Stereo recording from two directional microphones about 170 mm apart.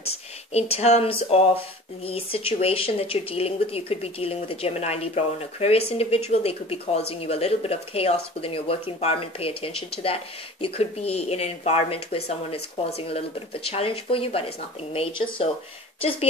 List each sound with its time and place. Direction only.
0.0 s speech: 40° left (ahead or behind)